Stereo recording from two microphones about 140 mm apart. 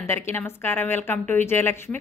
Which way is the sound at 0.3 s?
15° left (ahead or behind).